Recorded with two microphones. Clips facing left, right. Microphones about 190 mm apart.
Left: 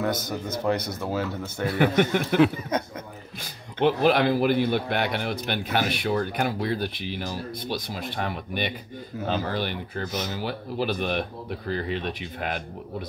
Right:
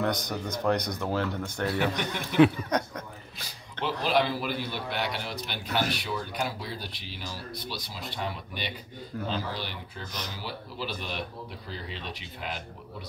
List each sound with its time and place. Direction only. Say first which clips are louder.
0.0 s speech: left 2 dB; 5° left (ahead or behind)
4.0 s a man's voice: left 3 dB; 55° left (ahead or behind)